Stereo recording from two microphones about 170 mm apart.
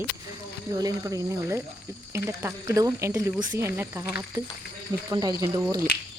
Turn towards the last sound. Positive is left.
turn(degrees=-15)  # may be behind; listen again after turning